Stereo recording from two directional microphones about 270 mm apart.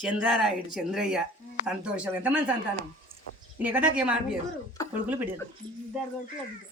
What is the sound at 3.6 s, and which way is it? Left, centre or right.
Speech, centre.